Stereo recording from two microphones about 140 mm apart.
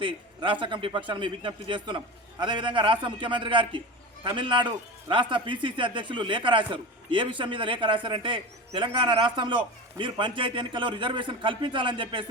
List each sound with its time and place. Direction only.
0.0 s a man's voice: 35° right (ahead or behind)